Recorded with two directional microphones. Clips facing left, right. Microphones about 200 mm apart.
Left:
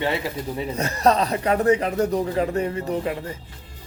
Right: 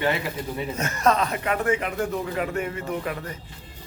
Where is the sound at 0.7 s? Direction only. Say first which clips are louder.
Left 3 dB; 35° left (ahead or behind).